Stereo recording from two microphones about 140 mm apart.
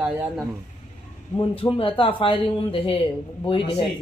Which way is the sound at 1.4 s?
40° left (ahead or behind).